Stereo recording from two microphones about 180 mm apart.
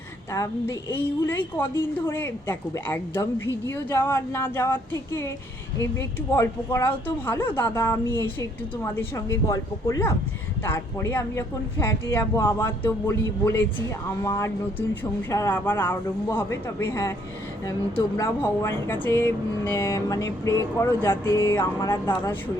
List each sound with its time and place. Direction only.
0.3 s a woman's voice: 20° left (ahead or behind)
18.2 s a woman's voice: 15° left (ahead or behind)